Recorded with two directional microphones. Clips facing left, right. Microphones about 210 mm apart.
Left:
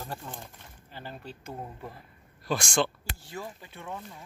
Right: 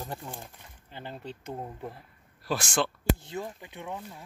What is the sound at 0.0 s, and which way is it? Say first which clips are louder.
Speech: right 1 dB; 15° right (ahead or behind).